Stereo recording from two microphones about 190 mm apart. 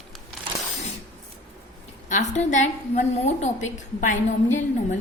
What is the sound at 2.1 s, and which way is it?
A woman's voice, 40° left (ahead or behind).